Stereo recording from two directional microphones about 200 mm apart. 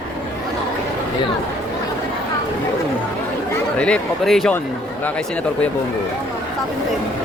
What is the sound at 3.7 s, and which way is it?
Speech, 5° left (ahead or behind).